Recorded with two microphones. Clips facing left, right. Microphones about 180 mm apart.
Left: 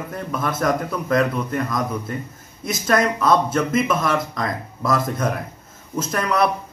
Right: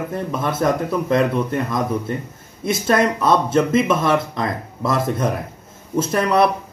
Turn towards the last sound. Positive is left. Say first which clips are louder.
# right 5 dB
turn(degrees=-25)  # may be behind; listen again after turning